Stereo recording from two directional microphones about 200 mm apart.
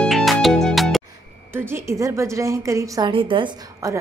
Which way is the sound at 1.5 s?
10° right (ahead or behind).